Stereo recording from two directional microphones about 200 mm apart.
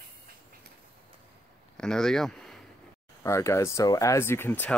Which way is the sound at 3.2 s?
15° left (ahead or behind).